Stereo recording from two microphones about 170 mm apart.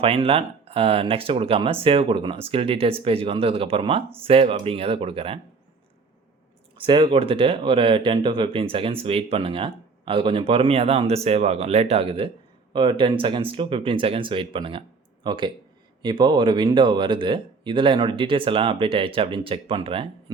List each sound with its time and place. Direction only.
0.0 s speech: 30° right (ahead or behind)
6.7 s speech: 30° right (ahead or behind)